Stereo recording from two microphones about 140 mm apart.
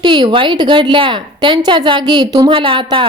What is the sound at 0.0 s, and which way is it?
A woman's voice, 35° right (ahead or behind).